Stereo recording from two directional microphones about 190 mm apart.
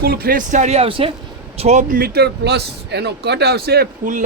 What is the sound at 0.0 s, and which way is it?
Speech, 55° right (ahead or behind).